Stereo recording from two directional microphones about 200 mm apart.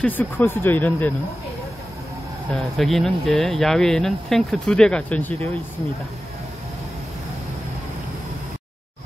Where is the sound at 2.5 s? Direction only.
Centre (ahead or behind).